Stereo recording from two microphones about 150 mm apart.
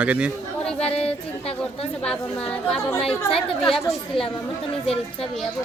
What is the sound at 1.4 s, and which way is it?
Speech, 40° left (ahead or behind).